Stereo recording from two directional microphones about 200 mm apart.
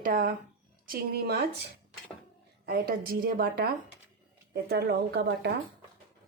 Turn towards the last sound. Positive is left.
turn(degrees=-55)  # may be behind; listen again after turning